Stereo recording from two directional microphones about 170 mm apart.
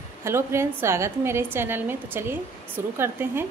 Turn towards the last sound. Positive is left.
turn(degrees=-15)  # may be behind; listen again after turning